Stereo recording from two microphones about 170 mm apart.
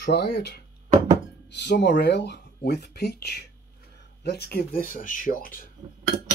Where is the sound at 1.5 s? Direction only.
85° left; by 5.5 s 55° left (ahead or behind).